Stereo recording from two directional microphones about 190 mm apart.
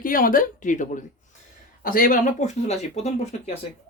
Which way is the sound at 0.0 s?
45° left (ahead or behind).